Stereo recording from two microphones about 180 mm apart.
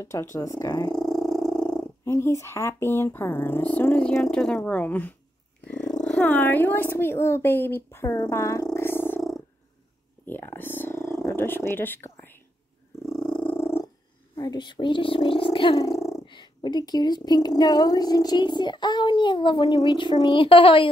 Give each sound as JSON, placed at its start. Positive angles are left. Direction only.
{"t": 0.0, "sound": "speech", "side_deg": 15}
{"t": 0.9, "sound": "purr", "side_deg": 0}
{"t": 2.0, "sound": "speech", "side_deg": 15}
{"t": 5.6, "sound": "purr", "side_deg": 5}
{"t": 6.0, "sound": "speech", "side_deg": 10}
{"t": 8.7, "sound": "a sound", "side_deg": 10}
{"t": 10.2, "sound": "speech", "side_deg": 10}
{"t": 11.2, "sound": "whispering", "side_deg": 10}
{"t": 13.0, "sound": "purr", "side_deg": 5}
{"t": 14.3, "sound": "speech", "side_deg": 20}